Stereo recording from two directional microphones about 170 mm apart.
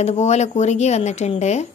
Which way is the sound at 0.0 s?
40° left (ahead or behind).